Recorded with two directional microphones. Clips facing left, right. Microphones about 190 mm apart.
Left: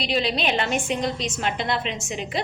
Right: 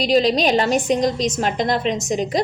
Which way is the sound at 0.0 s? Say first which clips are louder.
Right 8 dB; 40° right (ahead or behind).